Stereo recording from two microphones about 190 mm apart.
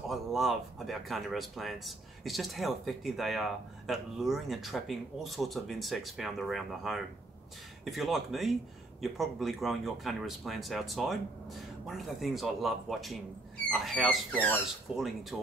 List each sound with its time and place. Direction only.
0.1 s speech: centre (ahead or behind)